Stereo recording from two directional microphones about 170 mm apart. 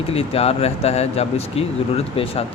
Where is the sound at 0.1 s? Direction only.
35° left (ahead or behind).